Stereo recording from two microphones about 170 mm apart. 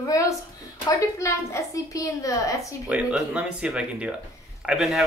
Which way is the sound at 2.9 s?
5° right (ahead or behind).